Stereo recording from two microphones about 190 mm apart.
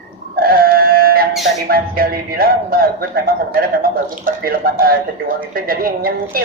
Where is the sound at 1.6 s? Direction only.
50° right (ahead or behind).